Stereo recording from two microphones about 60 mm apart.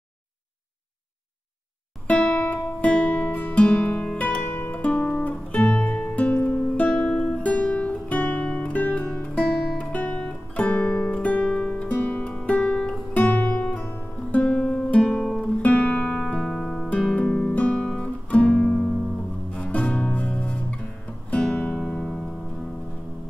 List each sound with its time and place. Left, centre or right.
2.0 s music: left
6.3 s music: left
6.9 s music: centre
13.1 s music: left; by 15.4 s centre
15.6 s music: left; by 17.0 s centre
17.1 s guitar: centre
19.5 s music: left
21.3 s music: centre